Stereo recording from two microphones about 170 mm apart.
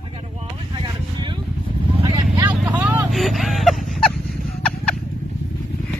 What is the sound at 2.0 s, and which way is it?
Vehicle, 25° right (ahead or behind).